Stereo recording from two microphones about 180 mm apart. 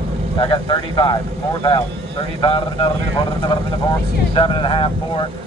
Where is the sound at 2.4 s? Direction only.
30° left (ahead or behind).